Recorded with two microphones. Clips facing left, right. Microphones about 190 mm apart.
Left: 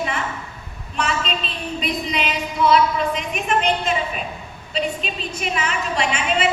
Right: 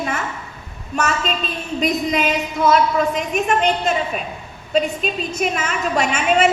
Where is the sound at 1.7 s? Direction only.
45° right (ahead or behind).